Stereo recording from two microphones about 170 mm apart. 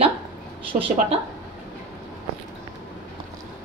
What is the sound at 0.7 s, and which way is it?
Speech, 40° right (ahead or behind).